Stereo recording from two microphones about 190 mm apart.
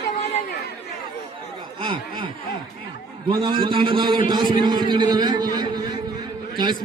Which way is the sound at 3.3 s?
25° right (ahead or behind).